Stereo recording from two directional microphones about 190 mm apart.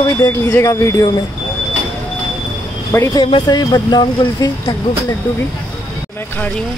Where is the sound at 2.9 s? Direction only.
15° left (ahead or behind).